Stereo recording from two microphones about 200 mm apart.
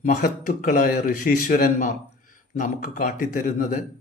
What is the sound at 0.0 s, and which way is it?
A man's voice, 40° left (ahead or behind).